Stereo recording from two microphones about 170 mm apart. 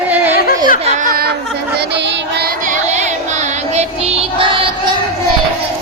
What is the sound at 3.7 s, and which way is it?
Music, 35° right (ahead or behind).